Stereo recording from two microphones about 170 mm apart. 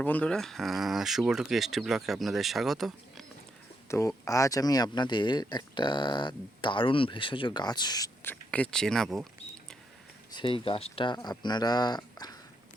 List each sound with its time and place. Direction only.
0.0 s speech: 10° left (ahead or behind)
3.8 s speech: 20° left (ahead or behind); by 9.2 s centre (ahead or behind)
10.3 s speech: 30° left (ahead or behind)